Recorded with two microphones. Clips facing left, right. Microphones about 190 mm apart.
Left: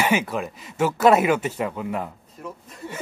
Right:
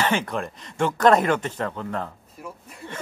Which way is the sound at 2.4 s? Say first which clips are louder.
Left 2 dB; 10° right (ahead or behind).